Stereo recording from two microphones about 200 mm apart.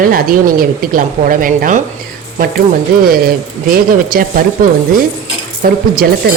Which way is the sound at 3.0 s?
45° right (ahead or behind).